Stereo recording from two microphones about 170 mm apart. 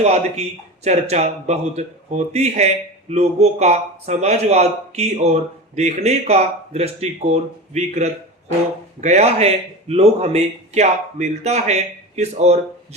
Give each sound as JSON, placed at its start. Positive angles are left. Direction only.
{"t": 0.0, "sound": "speech", "side_deg": -40}